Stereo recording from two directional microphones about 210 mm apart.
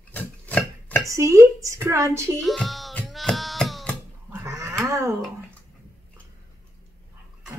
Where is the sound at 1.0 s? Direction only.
15° right (ahead or behind).